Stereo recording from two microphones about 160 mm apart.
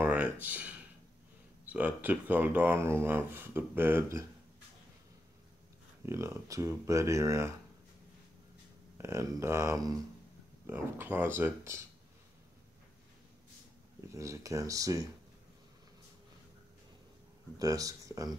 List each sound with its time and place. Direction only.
0.0 s speech: 10° right (ahead or behind)
6.0 s speech: 15° right (ahead or behind)
8.9 s speech: 15° right (ahead or behind)
14.1 s speech: 20° right (ahead or behind)
17.6 s speech: 20° right (ahead or behind)